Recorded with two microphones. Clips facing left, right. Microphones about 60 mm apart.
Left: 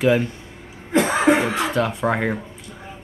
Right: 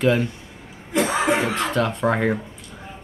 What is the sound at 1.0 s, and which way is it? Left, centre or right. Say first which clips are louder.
Cough: left 3 dB; left.